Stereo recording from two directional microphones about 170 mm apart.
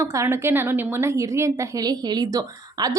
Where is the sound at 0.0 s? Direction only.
15° right (ahead or behind).